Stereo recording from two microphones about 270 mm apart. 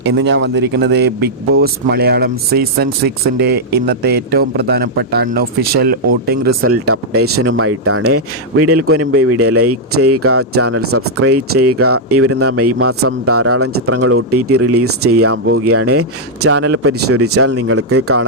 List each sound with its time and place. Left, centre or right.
0.1 s speech: right
6.4 s speech: right